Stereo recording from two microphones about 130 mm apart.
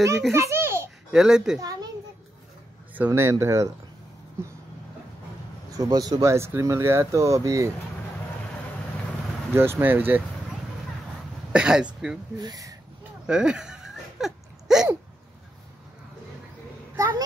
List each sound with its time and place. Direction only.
0.3 s a sound: 20° right (ahead or behind)
1.1 s speech: 5° right (ahead or behind)
1.6 s a sound: 30° right (ahead or behind)
3.1 s speech: 20° right (ahead or behind)
5.8 s speech: 30° right (ahead or behind)
9.5 s speech: 15° right (ahead or behind)
11.5 s speech: 5° right (ahead or behind)
12.4 s speech: 30° right (ahead or behind)
13.3 s a sound: 5° right (ahead or behind)
16.9 s a child's voice: 25° right (ahead or behind)